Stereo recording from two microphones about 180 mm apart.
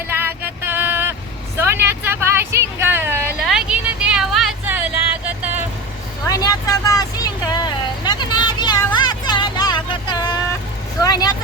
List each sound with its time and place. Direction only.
0.1 s vehicle: 10° right (ahead or behind)
1.5 s a sound: 15° right (ahead or behind)
3.4 s vehicle: 5° right (ahead or behind)
6.2 s vehicle: 20° left (ahead or behind)